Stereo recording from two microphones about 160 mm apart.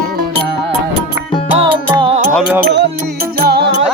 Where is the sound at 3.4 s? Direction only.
90° right.